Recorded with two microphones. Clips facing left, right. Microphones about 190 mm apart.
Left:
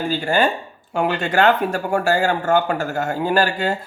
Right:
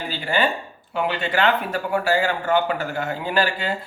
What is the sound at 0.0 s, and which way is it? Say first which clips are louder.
Speech: left 4 dB; 45° left (ahead or behind).